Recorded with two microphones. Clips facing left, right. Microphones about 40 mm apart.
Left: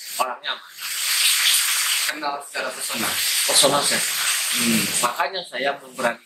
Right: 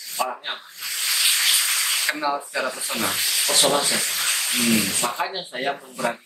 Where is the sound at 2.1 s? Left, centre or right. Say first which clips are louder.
Right 3 dB; centre.